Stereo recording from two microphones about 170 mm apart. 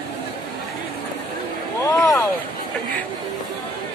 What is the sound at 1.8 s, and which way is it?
Speech, 15° left (ahead or behind).